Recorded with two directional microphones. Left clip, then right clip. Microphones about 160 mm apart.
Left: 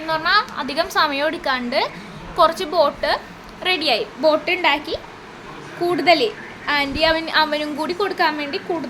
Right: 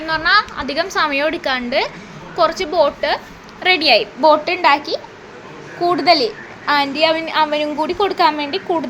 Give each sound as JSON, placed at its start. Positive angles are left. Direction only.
{"t": 0.0, "sound": "a woman's voice", "side_deg": -20}
{"t": 3.6, "sound": "a woman's voice", "side_deg": -25}
{"t": 8.0, "sound": "a woman's voice", "side_deg": -20}